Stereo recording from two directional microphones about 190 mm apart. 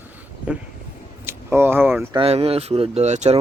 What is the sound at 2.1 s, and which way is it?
Speech, 30° right (ahead or behind).